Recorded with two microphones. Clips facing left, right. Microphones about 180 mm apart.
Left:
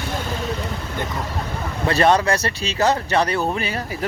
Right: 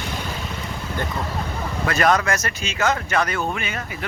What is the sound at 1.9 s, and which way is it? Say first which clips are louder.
Speech: left 3 dB; 30° left (ahead or behind).